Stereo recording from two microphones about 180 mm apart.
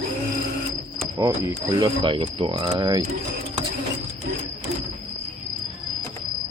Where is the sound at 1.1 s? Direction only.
20° right (ahead or behind).